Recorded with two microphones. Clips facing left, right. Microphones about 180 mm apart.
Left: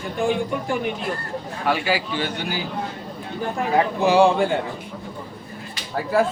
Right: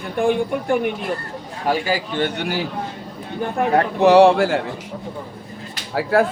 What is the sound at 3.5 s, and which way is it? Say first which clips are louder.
A man's voice: right 3 dB; 60° right (ahead or behind).